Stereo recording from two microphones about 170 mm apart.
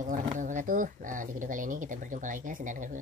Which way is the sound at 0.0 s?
50° right (ahead or behind).